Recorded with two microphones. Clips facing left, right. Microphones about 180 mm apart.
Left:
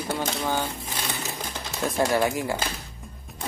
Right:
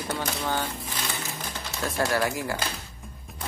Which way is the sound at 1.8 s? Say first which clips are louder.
Left 3 dB; 20° left (ahead or behind).